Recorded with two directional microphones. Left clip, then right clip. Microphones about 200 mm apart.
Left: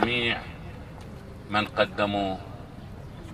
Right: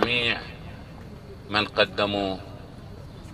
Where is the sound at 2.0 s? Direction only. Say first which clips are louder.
Right 1 dB; 45° right (ahead or behind).